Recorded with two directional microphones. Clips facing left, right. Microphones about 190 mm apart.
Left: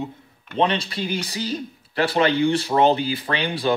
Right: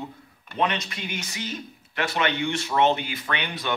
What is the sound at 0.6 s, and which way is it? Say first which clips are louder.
Speech: left 5 dB; 30° left (ahead or behind).